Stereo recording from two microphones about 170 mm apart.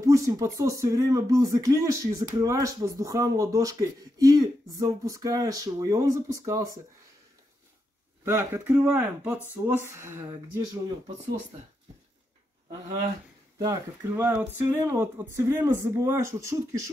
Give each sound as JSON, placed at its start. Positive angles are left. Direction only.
{"t": 0.0, "sound": "a sound", "side_deg": -20}
{"t": 0.6, "sound": "speech", "side_deg": -20}
{"t": 8.3, "sound": "speech", "side_deg": -15}
{"t": 13.6, "sound": "speech", "side_deg": -20}